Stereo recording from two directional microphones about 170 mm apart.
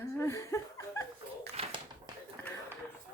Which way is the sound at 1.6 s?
35° right (ahead or behind).